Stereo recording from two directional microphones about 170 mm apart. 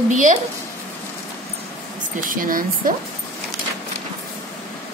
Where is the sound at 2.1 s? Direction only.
55° right (ahead or behind).